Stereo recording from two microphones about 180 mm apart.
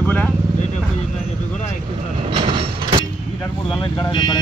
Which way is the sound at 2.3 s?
30° right (ahead or behind).